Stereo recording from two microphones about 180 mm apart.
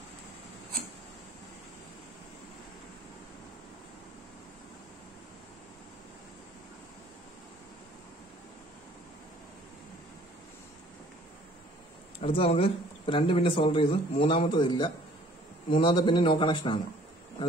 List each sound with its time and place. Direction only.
12.2 s speech: 30° left (ahead or behind)